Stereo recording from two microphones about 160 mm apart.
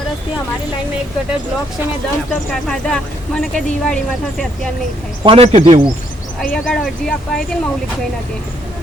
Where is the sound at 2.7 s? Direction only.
5° left (ahead or behind).